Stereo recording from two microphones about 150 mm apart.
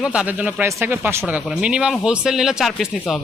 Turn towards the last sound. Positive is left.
turn(degrees=0)  # may be behind; listen again after turning